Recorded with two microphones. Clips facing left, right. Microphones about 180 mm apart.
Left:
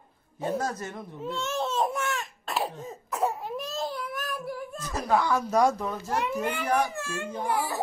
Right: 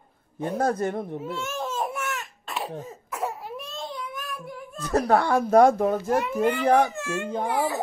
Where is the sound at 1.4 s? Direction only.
10° right (ahead or behind).